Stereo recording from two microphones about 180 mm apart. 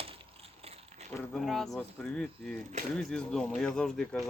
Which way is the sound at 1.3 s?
Centre (ahead or behind).